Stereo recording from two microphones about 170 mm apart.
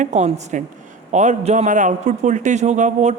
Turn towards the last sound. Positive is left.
turn(degrees=-45)  # may be behind; listen again after turning